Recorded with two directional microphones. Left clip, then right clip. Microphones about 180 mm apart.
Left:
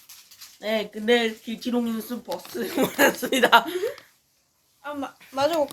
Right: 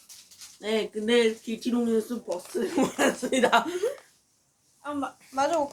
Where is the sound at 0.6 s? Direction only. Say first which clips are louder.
Left 1 dB; 35° left (ahead or behind).